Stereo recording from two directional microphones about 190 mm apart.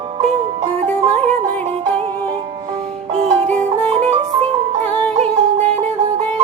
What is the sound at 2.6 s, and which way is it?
Music, 30° right (ahead or behind).